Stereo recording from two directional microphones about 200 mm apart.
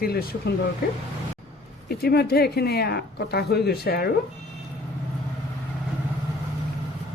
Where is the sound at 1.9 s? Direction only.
50° left (ahead or behind).